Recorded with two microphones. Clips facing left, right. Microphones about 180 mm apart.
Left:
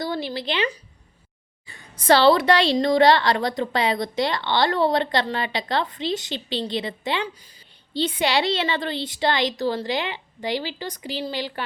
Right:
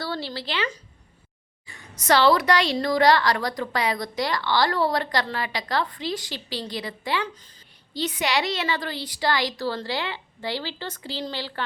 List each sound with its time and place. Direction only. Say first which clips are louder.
0.0 s speech: left 4 dB; 15° left (ahead or behind)
1.6 s a woman's voice: left 5 dB; 30° left (ahead or behind); by 11.6 s 15° left (ahead or behind)